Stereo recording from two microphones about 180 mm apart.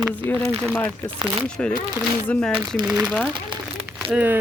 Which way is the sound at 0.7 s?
5° left (ahead or behind).